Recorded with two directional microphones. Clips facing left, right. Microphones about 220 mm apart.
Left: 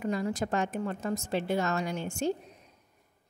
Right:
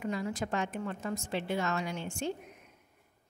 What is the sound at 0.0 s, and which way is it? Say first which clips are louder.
A woman's voice: left 4 dB; 40° left (ahead or behind).